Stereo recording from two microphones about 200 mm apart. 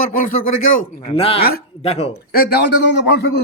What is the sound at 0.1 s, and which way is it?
Speech, 45° left (ahead or behind).